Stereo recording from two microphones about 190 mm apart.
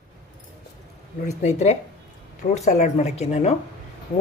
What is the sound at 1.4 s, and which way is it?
Speech, 35° left (ahead or behind).